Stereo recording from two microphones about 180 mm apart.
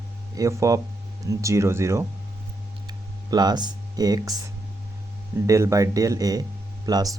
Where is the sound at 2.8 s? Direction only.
25° right (ahead or behind).